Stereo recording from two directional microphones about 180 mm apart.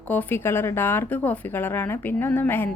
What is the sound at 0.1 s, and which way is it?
A woman's voice, 10° left (ahead or behind).